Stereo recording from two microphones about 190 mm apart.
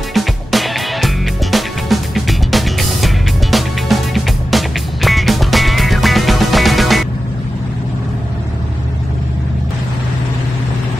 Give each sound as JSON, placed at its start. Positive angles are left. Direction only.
{"t": 0.1, "sound": "music", "side_deg": 0}